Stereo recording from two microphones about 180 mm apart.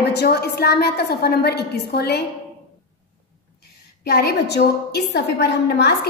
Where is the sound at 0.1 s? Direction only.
65° left (ahead or behind).